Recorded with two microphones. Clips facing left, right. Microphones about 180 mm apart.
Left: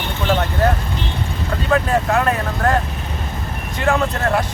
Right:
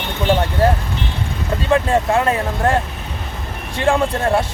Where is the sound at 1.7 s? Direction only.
25° right (ahead or behind).